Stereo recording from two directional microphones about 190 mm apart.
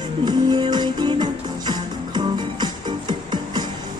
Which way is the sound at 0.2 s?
20° right (ahead or behind).